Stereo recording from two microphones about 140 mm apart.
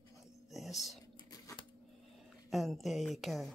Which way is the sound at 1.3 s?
25° left (ahead or behind).